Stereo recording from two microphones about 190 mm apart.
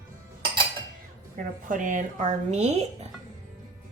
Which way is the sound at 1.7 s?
45° right (ahead or behind).